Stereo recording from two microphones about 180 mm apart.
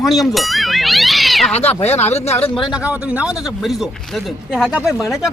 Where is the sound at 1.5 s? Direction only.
35° left (ahead or behind).